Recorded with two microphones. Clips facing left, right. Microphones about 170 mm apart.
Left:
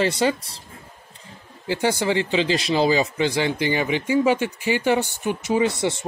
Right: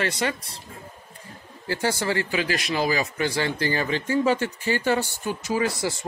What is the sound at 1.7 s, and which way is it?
Speech, 15° left (ahead or behind).